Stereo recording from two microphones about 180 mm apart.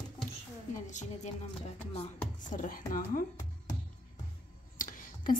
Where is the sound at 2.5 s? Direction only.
50° left (ahead or behind).